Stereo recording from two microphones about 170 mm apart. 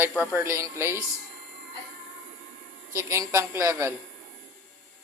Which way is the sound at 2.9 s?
15° right (ahead or behind).